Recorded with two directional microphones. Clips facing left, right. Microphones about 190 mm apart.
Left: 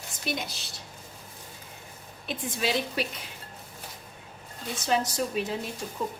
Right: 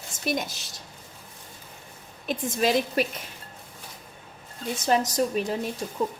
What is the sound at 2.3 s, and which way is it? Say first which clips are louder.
Speech: right 5 dB; 45° right (ahead or behind).